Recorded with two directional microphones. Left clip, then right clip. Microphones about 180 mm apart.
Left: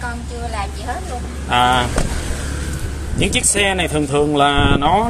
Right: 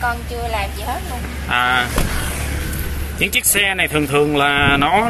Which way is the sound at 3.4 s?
5° left (ahead or behind).